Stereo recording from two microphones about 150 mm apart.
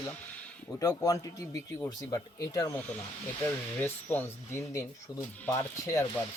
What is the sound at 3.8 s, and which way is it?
Speech, 15° left (ahead or behind).